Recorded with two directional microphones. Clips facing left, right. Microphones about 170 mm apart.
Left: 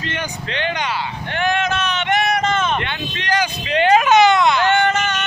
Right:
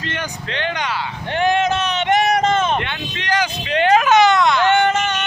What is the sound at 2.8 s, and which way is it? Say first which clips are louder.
Speech: left 1 dB; centre (ahead or behind).